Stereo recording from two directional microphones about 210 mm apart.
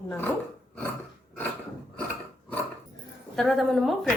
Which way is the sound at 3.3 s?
Centre (ahead or behind).